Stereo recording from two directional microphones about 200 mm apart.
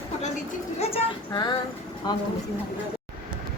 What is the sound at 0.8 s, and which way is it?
Speech, 25° left (ahead or behind).